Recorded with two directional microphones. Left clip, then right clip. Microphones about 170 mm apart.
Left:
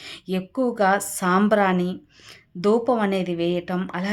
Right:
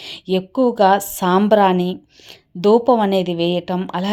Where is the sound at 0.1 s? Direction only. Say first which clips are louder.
Right 9 dB; 25° right (ahead or behind).